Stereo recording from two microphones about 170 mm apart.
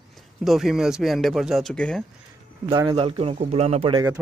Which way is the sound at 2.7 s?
30° right (ahead or behind).